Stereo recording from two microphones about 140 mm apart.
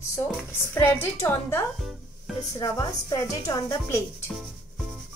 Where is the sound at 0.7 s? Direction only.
15° left (ahead or behind).